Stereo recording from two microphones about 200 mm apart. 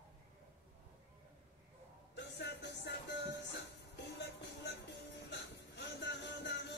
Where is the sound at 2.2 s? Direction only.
55° left (ahead or behind).